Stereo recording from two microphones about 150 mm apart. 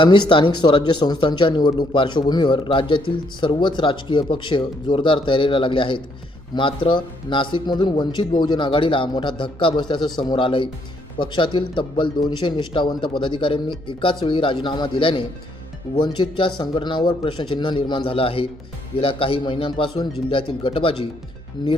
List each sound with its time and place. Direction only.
0.0 s speech: 35° left (ahead or behind)